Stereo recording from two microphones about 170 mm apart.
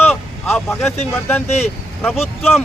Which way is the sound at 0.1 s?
10° left (ahead or behind).